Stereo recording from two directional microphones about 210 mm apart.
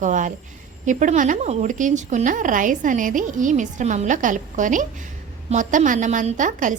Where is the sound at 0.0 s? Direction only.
35° right (ahead or behind).